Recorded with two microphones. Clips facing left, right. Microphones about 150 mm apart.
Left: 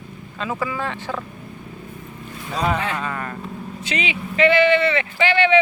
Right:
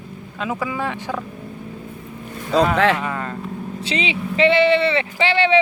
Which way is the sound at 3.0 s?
20° right (ahead or behind).